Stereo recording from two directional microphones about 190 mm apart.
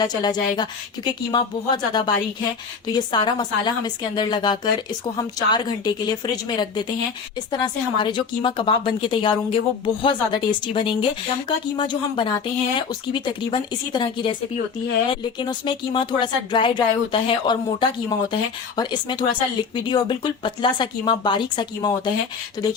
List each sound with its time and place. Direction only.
0.0 s speech: 20° left (ahead or behind)